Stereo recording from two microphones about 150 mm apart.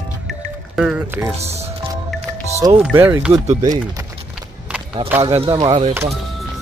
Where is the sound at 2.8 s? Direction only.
15° right (ahead or behind).